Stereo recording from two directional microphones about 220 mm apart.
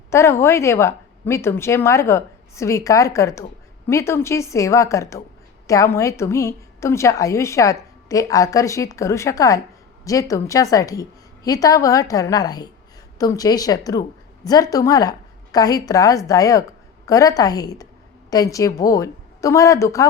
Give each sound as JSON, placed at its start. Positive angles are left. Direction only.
{"t": 0.1, "sound": "a woman's voice", "side_deg": 10}